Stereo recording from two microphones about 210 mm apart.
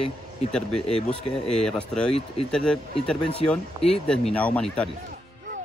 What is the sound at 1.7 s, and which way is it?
Speech, 5° left (ahead or behind).